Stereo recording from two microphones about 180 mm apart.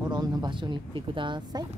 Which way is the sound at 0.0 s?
20° right (ahead or behind).